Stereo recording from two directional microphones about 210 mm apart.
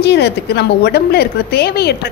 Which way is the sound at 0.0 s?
55° left (ahead or behind).